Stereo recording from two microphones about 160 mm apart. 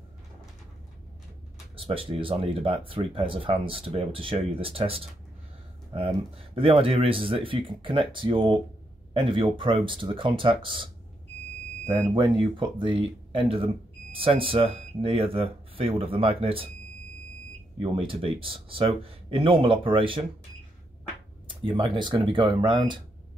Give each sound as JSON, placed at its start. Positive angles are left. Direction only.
{"t": 1.8, "sound": "speech", "side_deg": -35}
{"t": 12.2, "sound": "speech", "side_deg": -30}
{"t": 17.7, "sound": "speech", "side_deg": -35}
{"t": 21.5, "sound": "speech", "side_deg": -30}